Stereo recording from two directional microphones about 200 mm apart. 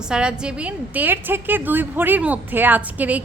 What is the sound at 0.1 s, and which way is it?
A woman's voice, 5° right (ahead or behind).